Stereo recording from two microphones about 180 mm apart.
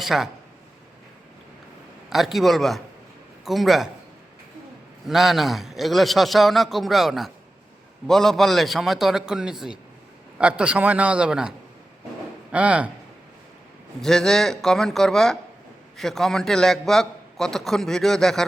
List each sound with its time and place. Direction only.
0.0 s speech: centre (ahead or behind)
2.0 s a man's voice: centre (ahead or behind)
5.0 s a man's voice: centre (ahead or behind)
14.0 s a man's voice: 5° left (ahead or behind)